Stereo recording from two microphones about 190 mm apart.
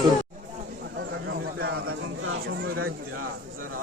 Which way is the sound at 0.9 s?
60° right (ahead or behind).